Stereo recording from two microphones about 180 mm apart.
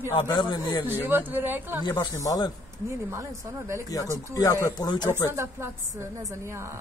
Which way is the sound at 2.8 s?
15° right (ahead or behind).